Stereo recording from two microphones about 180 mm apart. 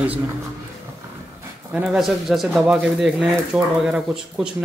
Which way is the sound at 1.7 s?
5° right (ahead or behind).